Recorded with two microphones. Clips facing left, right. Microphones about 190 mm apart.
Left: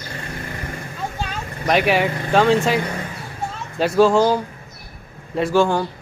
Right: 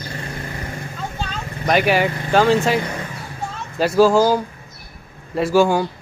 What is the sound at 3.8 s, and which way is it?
Speech, centre (ahead or behind).